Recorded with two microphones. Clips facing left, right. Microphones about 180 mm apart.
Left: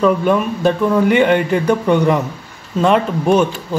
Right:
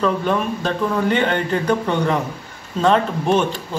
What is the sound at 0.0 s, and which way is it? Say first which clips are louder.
Speech: left 5 dB; 10° left (ahead or behind).